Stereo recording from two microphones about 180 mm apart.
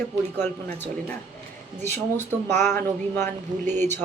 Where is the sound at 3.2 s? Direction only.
40° right (ahead or behind).